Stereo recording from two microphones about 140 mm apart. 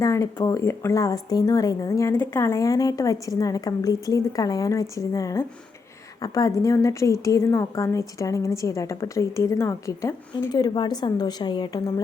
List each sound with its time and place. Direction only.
0.0 s speech: 20° left (ahead or behind)
10.5 s speech: 30° left (ahead or behind)